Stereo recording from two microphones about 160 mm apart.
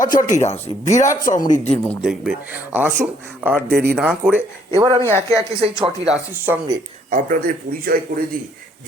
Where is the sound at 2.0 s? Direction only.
5° right (ahead or behind).